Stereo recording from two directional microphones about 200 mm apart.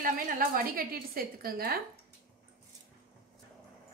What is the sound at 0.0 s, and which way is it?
A woman's voice, 45° right (ahead or behind).